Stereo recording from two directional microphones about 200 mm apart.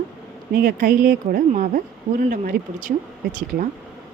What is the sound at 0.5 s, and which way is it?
A woman's voice, 45° right (ahead or behind).